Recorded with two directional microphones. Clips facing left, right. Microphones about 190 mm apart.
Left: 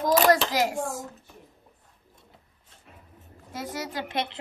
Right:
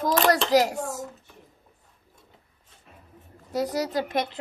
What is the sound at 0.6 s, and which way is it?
Speech, 45° right (ahead or behind).